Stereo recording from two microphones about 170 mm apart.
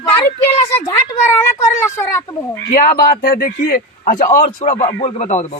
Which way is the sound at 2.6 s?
65° left (ahead or behind).